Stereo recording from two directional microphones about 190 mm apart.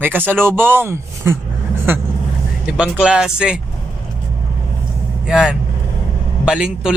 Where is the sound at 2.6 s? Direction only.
5° right (ahead or behind).